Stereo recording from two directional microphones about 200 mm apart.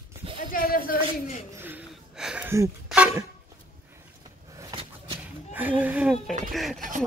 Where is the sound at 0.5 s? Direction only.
45° left (ahead or behind).